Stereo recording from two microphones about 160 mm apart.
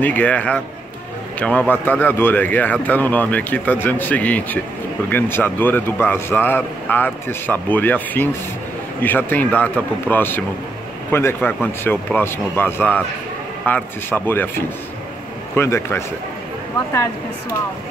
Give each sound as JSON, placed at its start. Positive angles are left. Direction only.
{"t": 0.0, "sound": "speech", "side_deg": 10}